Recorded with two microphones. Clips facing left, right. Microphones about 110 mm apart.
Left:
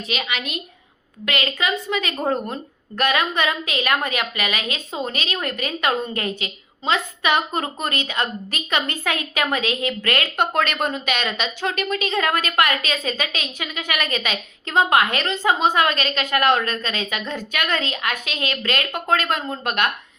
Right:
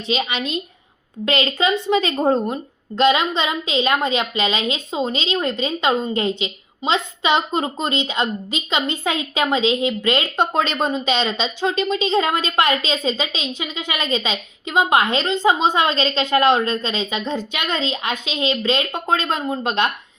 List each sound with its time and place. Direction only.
0.1 s a woman's voice: 30° right (ahead or behind)